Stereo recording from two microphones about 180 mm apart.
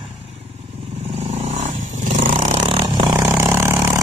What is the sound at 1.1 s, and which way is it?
Vehicle, 40° right (ahead or behind).